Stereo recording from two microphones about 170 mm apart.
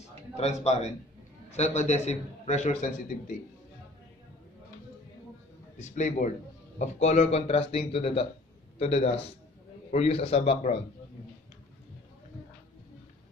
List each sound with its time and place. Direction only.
0.4 s a man's voice: 40° left (ahead or behind)
5.8 s a man's voice: 45° left (ahead or behind)